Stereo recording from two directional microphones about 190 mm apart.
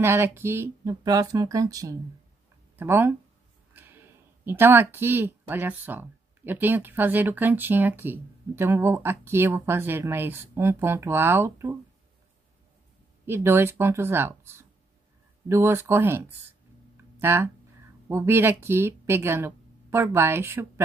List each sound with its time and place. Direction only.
0.0 s speech: 10° right (ahead or behind)
13.2 s speech: 15° right (ahead or behind)
16.9 s a sound: 10° right (ahead or behind)
18.0 s speech: 10° right (ahead or behind)